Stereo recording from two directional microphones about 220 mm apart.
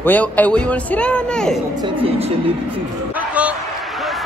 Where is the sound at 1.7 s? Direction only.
25° right (ahead or behind).